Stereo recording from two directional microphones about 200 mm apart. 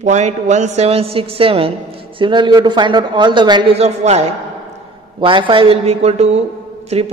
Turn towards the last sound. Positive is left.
turn(degrees=-35)  # may be behind; listen again after turning